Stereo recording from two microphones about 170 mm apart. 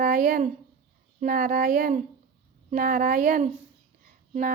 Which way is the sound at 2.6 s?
55° right (ahead or behind).